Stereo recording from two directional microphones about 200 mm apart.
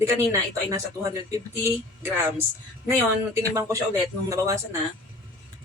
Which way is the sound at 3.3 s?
15° right (ahead or behind).